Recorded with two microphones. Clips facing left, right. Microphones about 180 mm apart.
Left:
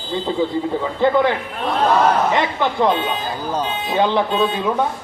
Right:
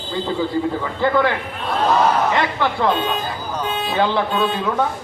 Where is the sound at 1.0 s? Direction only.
20° left (ahead or behind).